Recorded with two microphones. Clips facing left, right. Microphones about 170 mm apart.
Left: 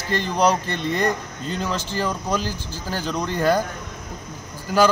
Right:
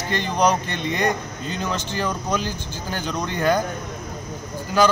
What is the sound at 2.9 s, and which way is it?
Speech, 5° left (ahead or behind).